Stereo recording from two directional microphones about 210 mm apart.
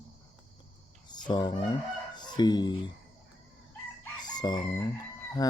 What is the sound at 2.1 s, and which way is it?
Chicken, 20° left (ahead or behind).